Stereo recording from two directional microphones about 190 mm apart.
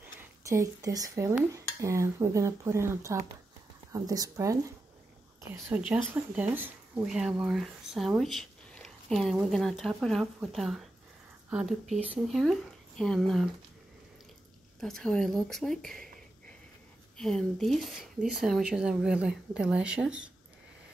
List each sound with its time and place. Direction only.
0.0 s speech: 15° right (ahead or behind)
5.5 s speech: 5° right (ahead or behind)
14.8 s speech: centre (ahead or behind)
17.2 s speech: 5° left (ahead or behind)